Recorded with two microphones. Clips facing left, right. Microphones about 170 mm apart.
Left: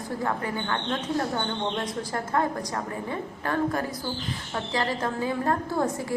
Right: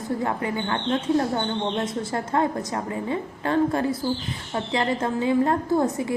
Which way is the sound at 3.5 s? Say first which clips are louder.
Right 5 dB; 25° right (ahead or behind).